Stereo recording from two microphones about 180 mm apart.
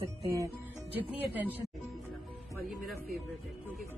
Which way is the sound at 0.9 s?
10° right (ahead or behind).